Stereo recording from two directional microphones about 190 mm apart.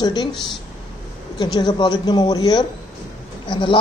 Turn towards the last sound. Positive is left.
turn(degrees=25)  # may be behind; listen again after turning